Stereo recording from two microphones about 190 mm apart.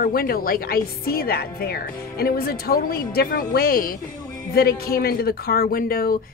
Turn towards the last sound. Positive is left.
turn(degrees=50)  # may be behind; listen again after turning